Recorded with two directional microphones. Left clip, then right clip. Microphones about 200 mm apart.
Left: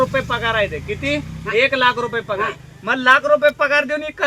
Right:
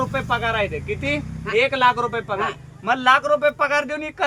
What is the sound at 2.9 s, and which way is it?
Speech, 25° right (ahead or behind).